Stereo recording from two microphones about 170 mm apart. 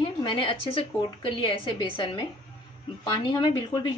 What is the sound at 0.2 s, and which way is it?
Speech, 30° left (ahead or behind).